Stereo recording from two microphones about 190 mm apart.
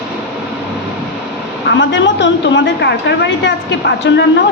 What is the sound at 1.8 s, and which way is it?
A woman's voice, 75° left (ahead or behind).